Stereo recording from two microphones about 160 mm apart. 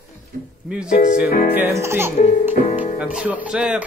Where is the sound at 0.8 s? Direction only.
55° left (ahead or behind).